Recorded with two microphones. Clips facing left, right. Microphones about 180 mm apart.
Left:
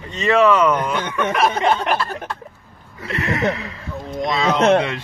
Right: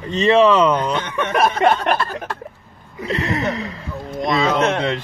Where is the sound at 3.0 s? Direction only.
35° right (ahead or behind).